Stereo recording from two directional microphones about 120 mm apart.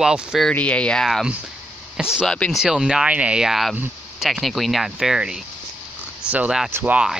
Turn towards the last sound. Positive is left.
turn(degrees=-20)  # may be behind; listen again after turning